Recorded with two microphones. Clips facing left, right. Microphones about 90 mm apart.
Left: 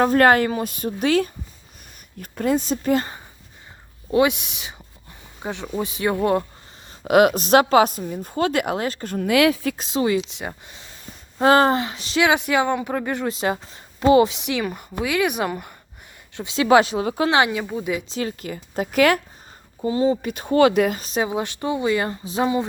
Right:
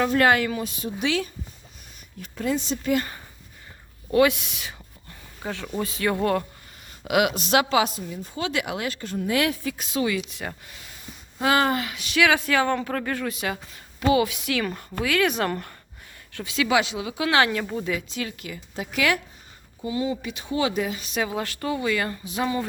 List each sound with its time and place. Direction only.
0.0 s speech: 40° left (ahead or behind)
4.1 s speech: 20° left (ahead or behind)
7.0 s a woman's voice: 40° left (ahead or behind)
9.0 s speech: 70° left (ahead or behind); by 9.7 s 85° left
9.7 s speech: 30° left (ahead or behind)
11.3 s speech: 35° left (ahead or behind); by 15.7 s 10° left (ahead or behind)
16.3 s speech: 25° left (ahead or behind)
16.6 s speech: 45° left (ahead or behind)
17.2 s speech: 20° left (ahead or behind)
18.1 s speech: 35° left (ahead or behind)
19.8 s speech: 35° left (ahead or behind); by 20.9 s 60° left (ahead or behind)
20.9 s a woman's voice: 35° left (ahead or behind)
21.2 s speech: 20° left (ahead or behind)